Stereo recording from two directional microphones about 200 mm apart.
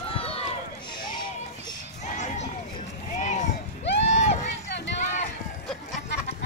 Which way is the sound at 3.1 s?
35° left (ahead or behind).